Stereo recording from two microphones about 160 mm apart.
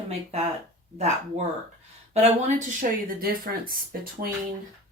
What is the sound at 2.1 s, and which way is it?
Speech, 45° right (ahead or behind).